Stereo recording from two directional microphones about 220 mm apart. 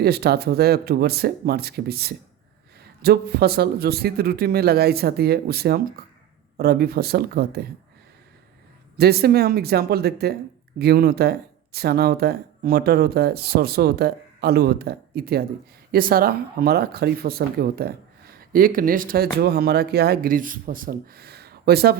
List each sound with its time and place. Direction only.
0.0 s speech: 45° right (ahead or behind)
9.0 s speech: 45° right (ahead or behind)